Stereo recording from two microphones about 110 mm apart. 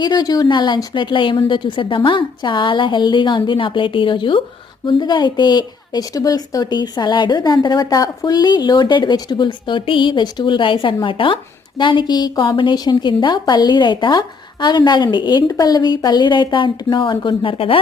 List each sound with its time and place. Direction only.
0.0 s a woman's voice: 40° left (ahead or behind); by 17.7 s 55° left (ahead or behind)